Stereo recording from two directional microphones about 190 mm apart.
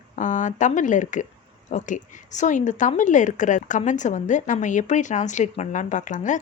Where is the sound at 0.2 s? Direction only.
40° left (ahead or behind).